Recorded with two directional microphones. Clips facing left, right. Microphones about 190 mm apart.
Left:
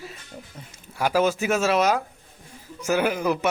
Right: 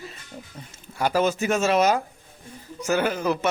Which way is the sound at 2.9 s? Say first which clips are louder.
Left 1 dB; 10° left (ahead or behind).